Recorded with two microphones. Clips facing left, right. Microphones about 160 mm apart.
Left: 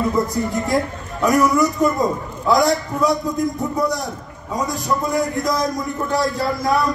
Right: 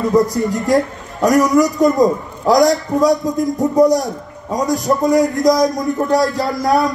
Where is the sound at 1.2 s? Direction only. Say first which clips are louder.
Right 4 dB; 40° right (ahead or behind).